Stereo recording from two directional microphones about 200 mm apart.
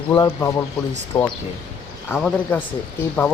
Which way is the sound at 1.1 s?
25° left (ahead or behind).